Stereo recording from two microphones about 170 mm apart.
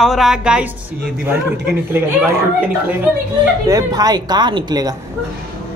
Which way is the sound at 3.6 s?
20° right (ahead or behind).